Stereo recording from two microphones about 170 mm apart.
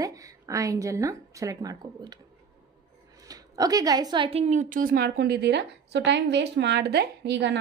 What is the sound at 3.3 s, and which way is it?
Speech, 20° right (ahead or behind).